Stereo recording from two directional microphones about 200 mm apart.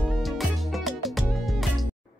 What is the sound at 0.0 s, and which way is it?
Music, centre (ahead or behind).